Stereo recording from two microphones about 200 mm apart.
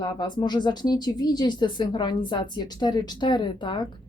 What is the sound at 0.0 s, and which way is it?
Speech, 20° left (ahead or behind).